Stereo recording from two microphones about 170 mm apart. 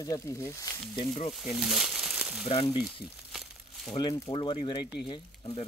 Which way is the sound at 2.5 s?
35° left (ahead or behind).